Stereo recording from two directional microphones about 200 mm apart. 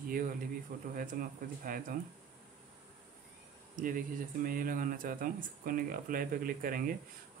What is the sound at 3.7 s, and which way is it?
Speech, 45° right (ahead or behind).